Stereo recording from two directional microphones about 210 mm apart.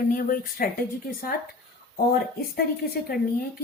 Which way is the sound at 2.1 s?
45° left (ahead or behind).